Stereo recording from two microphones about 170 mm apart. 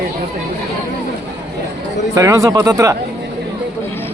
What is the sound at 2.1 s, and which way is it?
Speech, 20° right (ahead or behind).